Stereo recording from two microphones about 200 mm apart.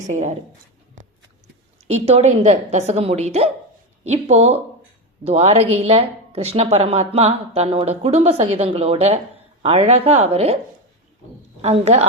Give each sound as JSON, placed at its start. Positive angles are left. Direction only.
{"t": 0.1, "sound": "speech", "side_deg": -35}
{"t": 1.9, "sound": "speech", "side_deg": -30}
{"t": 11.6, "sound": "speech", "side_deg": -30}